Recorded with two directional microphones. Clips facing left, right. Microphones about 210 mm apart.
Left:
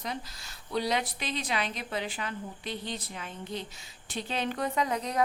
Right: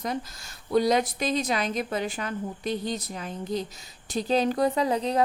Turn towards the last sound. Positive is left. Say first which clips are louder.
# right 5 dB
turn(degrees=-30)  # may be behind; listen again after turning